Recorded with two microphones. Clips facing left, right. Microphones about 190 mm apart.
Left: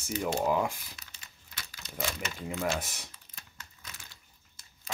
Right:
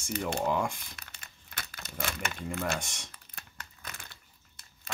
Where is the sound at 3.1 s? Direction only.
55° right (ahead or behind).